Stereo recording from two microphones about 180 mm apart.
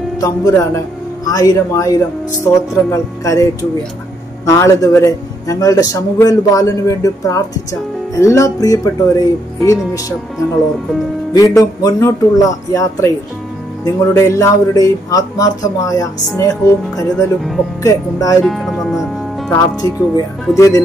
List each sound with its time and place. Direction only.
0.2 s a man's voice: 20° left (ahead or behind)
4.5 s a man's voice: 15° left (ahead or behind)
11.3 s a man's voice: 20° left (ahead or behind)
18.4 s speech: centre (ahead or behind)
19.5 s a man's voice: 20° left (ahead or behind)